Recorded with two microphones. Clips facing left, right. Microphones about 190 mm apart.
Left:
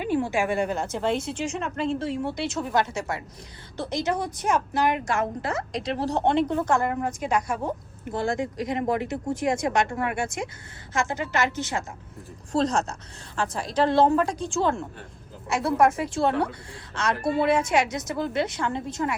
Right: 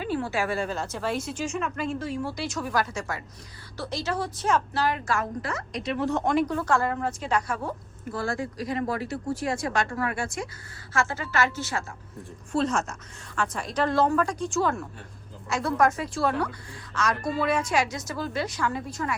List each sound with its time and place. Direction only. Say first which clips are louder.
0.0 s a woman's voice: left 3 dB; 15° left (ahead or behind)
12.5 s a woman's voice: left 2 dB; 35° left (ahead or behind)